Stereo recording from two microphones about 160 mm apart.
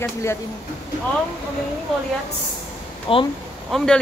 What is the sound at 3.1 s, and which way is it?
Speech, 35° left (ahead or behind).